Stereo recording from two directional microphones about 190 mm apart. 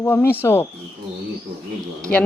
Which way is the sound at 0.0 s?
10° left (ahead or behind).